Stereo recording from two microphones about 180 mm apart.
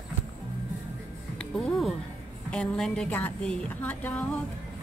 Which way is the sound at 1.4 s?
5° left (ahead or behind).